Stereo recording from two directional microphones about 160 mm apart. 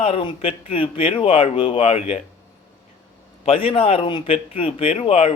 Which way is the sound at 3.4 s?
40° left (ahead or behind).